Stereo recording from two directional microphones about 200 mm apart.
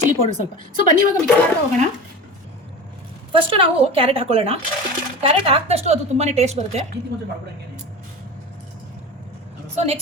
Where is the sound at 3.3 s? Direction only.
25° right (ahead or behind).